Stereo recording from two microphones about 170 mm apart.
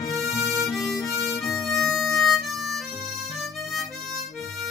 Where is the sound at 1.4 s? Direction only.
20° left (ahead or behind).